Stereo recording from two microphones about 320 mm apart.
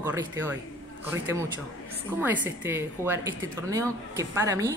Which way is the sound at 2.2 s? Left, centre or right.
Centre.